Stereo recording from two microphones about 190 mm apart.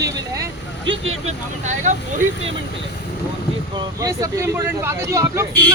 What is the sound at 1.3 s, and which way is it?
Speech, 40° right (ahead or behind).